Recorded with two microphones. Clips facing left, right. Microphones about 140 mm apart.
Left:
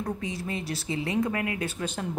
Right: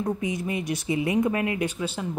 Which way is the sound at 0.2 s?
15° right (ahead or behind).